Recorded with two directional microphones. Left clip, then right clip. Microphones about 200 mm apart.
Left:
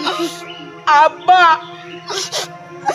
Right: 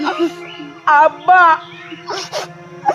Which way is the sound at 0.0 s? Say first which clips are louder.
Right 2 dB; 40° left (ahead or behind).